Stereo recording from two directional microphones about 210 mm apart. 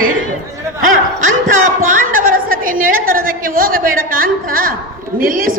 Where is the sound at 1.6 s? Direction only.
40° right (ahead or behind).